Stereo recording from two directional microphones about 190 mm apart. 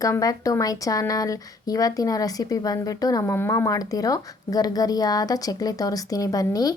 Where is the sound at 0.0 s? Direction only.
15° left (ahead or behind).